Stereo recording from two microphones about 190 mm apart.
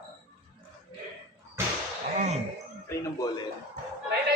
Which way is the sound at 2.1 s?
40° right (ahead or behind).